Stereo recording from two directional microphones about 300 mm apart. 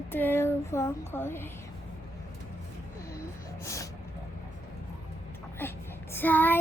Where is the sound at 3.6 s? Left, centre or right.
Centre.